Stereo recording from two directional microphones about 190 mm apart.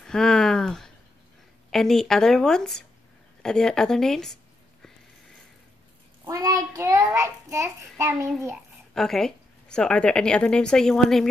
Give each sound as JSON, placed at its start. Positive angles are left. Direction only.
{"t": 0.0, "sound": "a sound", "side_deg": 5}
{"t": 1.7, "sound": "a woman's voice", "side_deg": 0}
{"t": 6.2, "sound": "a child's voice", "side_deg": -15}
{"t": 8.9, "sound": "a woman's voice", "side_deg": 0}